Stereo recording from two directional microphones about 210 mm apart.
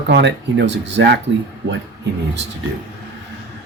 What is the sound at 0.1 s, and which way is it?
Speech, 55° right (ahead or behind).